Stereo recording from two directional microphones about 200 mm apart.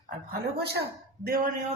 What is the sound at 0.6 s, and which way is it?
Speech, 55° right (ahead or behind).